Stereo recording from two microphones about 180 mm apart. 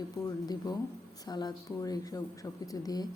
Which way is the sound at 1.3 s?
25° left (ahead or behind).